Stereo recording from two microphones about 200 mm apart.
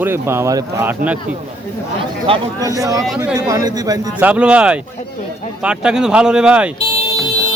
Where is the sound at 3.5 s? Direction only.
20° right (ahead or behind).